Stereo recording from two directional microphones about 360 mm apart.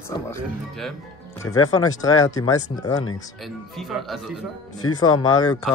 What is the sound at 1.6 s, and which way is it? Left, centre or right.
Speech, left.